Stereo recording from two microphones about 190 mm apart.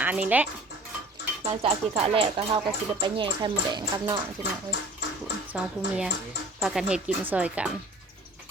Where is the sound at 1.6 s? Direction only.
30° right (ahead or behind).